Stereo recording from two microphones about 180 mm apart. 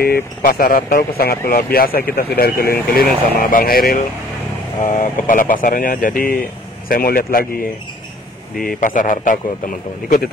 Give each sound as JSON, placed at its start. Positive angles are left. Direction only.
{"t": 0.0, "sound": "a man's voice", "side_deg": 55}